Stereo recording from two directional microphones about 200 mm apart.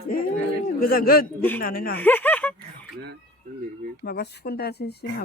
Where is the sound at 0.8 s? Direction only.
45° left (ahead or behind).